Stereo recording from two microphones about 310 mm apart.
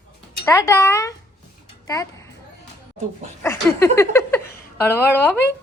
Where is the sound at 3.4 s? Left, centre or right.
Centre.